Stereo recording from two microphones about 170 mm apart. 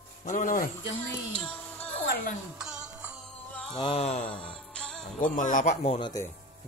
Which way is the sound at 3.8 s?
35° left (ahead or behind).